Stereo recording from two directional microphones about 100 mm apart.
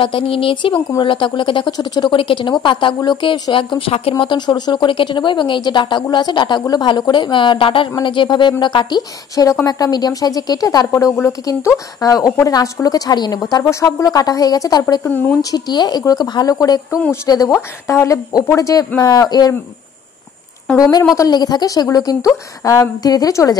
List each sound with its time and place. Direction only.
0.0 s speech: 60° left (ahead or behind)
4.2 s speech: 50° left (ahead or behind)
9.3 s a woman's voice: 35° left (ahead or behind)
15.0 s speech: 20° left (ahead or behind)
15.5 s a woman's voice: 45° left (ahead or behind)
17.5 s a woman's voice: 25° left (ahead or behind)
21.2 s a woman's voice: 40° left (ahead or behind)